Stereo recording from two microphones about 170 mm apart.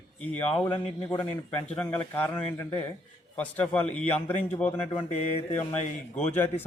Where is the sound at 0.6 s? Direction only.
25° left (ahead or behind).